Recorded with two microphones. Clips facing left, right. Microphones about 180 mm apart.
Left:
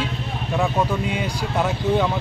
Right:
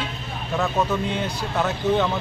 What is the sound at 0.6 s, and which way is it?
Speech, 10° left (ahead or behind).